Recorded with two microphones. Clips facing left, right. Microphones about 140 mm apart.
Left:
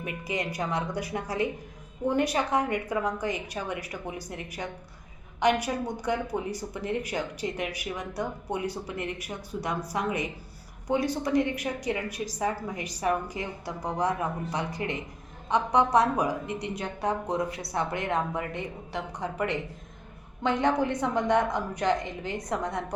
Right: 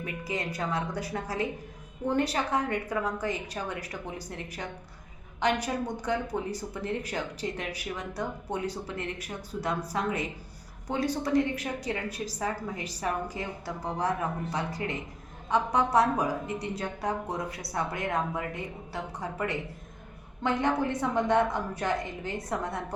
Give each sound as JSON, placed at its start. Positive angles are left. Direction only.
{"t": 0.0, "sound": "a woman's voice", "side_deg": 15}
{"t": 20.4, "sound": "speech", "side_deg": 20}